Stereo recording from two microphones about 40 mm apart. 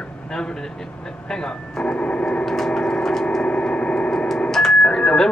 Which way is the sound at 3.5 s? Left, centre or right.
Left.